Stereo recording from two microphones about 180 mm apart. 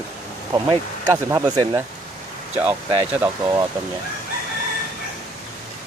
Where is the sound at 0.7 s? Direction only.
20° right (ahead or behind).